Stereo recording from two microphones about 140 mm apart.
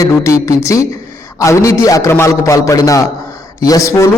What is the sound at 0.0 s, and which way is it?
A man's voice, 20° left (ahead or behind).